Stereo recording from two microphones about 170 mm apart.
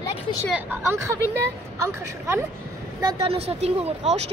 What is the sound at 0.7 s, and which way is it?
A woman's voice, 15° right (ahead or behind).